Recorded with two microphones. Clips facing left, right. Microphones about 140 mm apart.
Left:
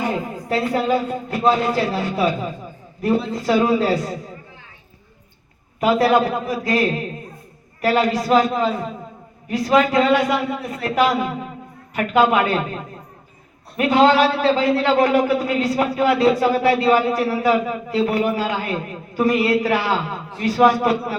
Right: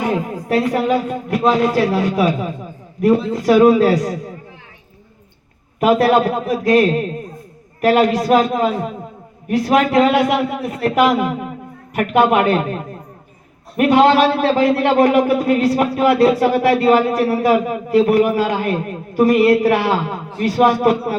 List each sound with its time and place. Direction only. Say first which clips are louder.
0.0 s speech: right 4 dB; 65° right (ahead or behind)
1.7 s speech: right 5 dB; 80° right
5.8 s a man's voice: right 3 dB; 55° right (ahead or behind)